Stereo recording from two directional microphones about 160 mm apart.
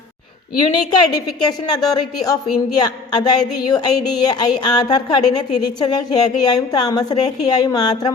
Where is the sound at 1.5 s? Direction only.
25° left (ahead or behind).